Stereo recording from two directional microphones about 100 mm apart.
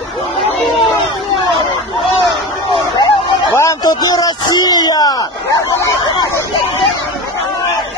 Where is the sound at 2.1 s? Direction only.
55° left (ahead or behind).